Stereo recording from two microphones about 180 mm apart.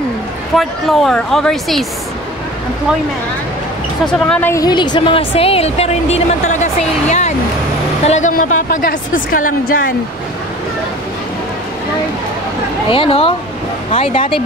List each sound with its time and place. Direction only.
0.6 s a woman's voice: centre (ahead or behind)
4.0 s a woman's voice: 5° left (ahead or behind); by 9.9 s 50° left (ahead or behind)
12.9 s a woman's voice: 30° left (ahead or behind)